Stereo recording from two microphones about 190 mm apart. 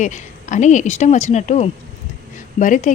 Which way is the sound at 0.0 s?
40° left (ahead or behind).